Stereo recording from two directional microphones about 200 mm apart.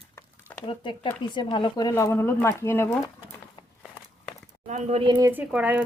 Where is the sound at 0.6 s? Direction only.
25° left (ahead or behind).